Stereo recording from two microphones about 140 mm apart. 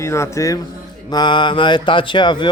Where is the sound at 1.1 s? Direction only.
30° left (ahead or behind).